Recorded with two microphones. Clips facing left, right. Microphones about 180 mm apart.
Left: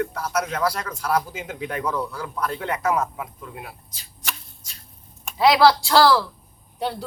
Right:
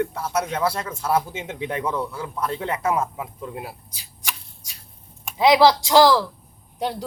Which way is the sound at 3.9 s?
10° right (ahead or behind).